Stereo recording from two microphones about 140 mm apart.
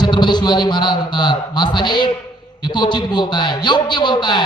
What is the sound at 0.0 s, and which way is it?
A man's voice, 30° left (ahead or behind).